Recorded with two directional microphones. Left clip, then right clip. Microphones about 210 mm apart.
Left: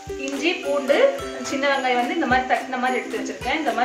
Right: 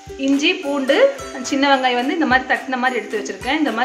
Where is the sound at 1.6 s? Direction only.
55° right (ahead or behind).